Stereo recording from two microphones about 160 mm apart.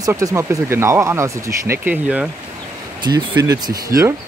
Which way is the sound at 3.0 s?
25° right (ahead or behind).